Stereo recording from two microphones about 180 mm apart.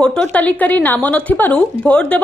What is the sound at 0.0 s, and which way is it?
Speech, 5° left (ahead or behind).